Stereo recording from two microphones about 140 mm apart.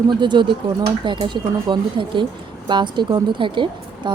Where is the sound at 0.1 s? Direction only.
35° right (ahead or behind).